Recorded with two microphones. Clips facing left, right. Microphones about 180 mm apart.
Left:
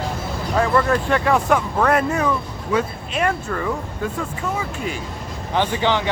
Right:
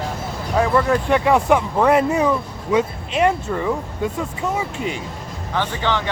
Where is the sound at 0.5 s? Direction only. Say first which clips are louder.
Right 1 dB; 15° right (ahead or behind).